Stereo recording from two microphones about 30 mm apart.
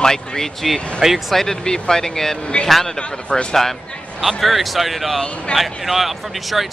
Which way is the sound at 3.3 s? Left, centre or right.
Left.